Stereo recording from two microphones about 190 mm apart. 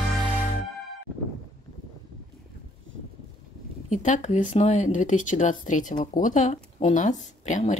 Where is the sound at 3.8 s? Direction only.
40° left (ahead or behind).